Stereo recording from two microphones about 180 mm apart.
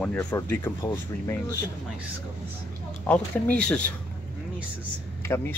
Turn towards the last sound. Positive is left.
turn(degrees=15)  # may be behind; listen again after turning